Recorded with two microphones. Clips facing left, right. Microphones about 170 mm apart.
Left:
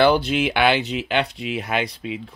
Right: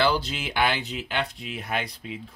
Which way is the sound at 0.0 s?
60° left (ahead or behind).